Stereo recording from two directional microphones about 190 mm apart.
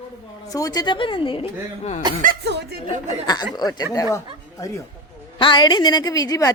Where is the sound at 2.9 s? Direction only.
25° left (ahead or behind).